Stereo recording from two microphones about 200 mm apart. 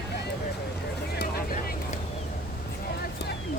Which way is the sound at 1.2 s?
50° left (ahead or behind).